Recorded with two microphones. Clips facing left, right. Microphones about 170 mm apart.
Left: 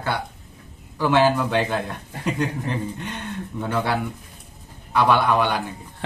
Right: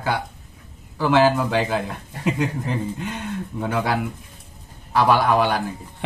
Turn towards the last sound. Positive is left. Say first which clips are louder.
# right 1 dB
turn(degrees=-5)  # may be behind; listen again after turning